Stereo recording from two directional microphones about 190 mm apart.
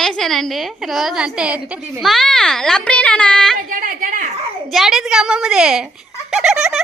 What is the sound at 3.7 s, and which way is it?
Speech, 45° right (ahead or behind).